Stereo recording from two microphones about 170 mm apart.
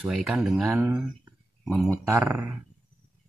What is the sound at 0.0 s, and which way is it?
Speech, centre (ahead or behind).